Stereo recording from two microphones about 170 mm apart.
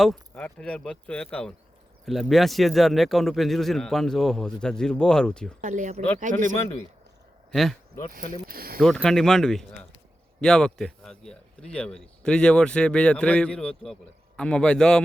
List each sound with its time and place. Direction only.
0.0 s speech: 5° left (ahead or behind)
5.5 s speech: 45° right (ahead or behind)
7.5 s speech: centre (ahead or behind)
8.3 s speech: 60° right (ahead or behind)
8.8 s speech: 5° left (ahead or behind)